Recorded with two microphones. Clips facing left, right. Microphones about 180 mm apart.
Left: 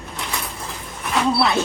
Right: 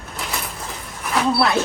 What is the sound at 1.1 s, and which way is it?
Speech, centre (ahead or behind).